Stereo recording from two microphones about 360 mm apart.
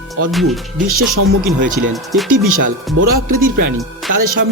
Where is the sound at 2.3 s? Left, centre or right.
Right.